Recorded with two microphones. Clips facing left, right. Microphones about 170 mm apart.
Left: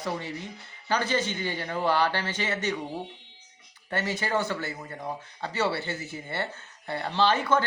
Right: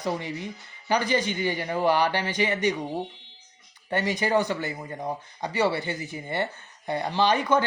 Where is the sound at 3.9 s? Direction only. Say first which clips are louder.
Right 4 dB; 15° right (ahead or behind).